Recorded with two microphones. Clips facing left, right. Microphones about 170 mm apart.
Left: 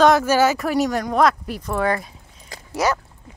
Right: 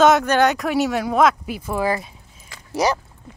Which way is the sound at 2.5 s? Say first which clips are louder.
Left 5 dB; 35° left (ahead or behind).